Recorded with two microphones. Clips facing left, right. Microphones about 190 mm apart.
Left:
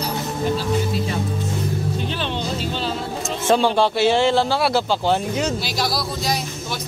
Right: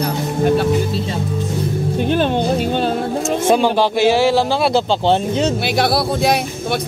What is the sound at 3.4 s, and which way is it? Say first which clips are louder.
Speech: right 1 dB; 10° right (ahead or behind).